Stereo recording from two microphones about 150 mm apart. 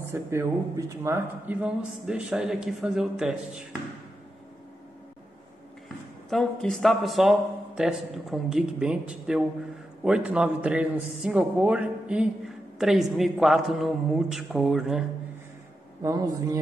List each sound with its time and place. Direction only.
0.1 s a man's voice: 15° right (ahead or behind)
6.3 s a man's voice: 5° left (ahead or behind)
16.0 s a man's voice: 20° right (ahead or behind)